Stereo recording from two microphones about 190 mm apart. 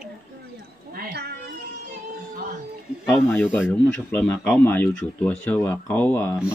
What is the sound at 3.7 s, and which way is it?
Speech, 10° left (ahead or behind).